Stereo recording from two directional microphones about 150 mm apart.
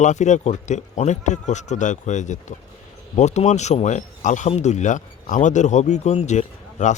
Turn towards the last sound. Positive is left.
turn(degrees=50)  # may be behind; listen again after turning